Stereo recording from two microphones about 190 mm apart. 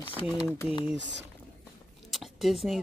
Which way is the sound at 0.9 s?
70° right (ahead or behind).